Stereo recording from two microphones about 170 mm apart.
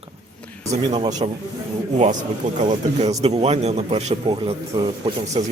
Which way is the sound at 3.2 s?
40° right (ahead or behind).